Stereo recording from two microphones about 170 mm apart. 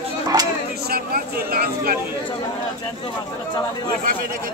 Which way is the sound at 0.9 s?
65° right (ahead or behind).